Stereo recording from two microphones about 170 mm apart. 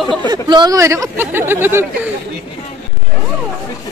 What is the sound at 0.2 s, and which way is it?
Speech, 25° right (ahead or behind).